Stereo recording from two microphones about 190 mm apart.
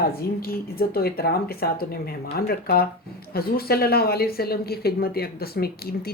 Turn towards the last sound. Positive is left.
turn(degrees=55)  # may be behind; listen again after turning